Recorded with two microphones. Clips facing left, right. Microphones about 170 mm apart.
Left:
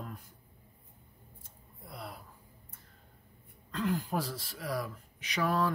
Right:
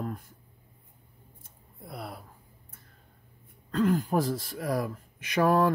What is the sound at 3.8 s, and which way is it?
Speech, 50° right (ahead or behind).